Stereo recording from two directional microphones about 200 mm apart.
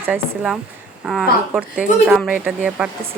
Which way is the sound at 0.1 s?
5° right (ahead or behind).